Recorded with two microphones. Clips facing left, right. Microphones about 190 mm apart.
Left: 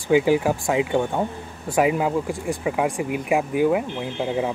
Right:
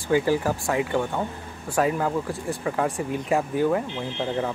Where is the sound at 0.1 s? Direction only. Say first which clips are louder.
Left 4 dB; 15° left (ahead or behind).